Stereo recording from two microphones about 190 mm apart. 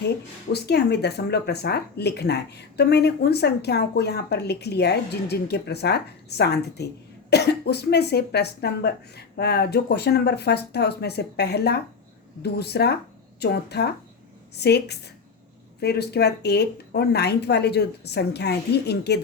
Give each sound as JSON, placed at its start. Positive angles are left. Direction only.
{"t": 0.5, "sound": "speech", "side_deg": 60}